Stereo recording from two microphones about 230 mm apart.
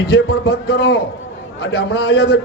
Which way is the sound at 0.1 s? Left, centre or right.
Left.